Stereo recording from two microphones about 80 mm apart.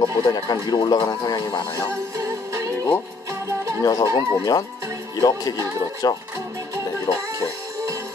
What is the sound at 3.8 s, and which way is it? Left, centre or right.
Speech, left.